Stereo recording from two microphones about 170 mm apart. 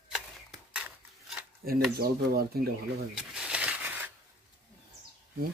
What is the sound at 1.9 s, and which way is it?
Speech, 65° right (ahead or behind).